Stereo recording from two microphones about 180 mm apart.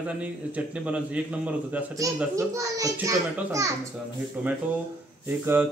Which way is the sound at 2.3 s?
20° right (ahead or behind).